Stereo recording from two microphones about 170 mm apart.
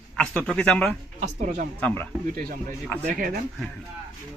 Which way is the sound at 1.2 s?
50° right (ahead or behind).